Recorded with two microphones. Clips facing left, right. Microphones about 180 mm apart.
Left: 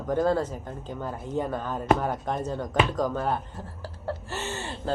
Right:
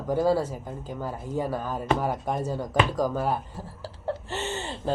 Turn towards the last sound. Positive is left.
turn(degrees=-20)  # may be behind; listen again after turning